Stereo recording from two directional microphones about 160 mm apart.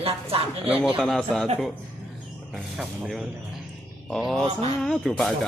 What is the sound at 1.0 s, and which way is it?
Speech, 5° left (ahead or behind).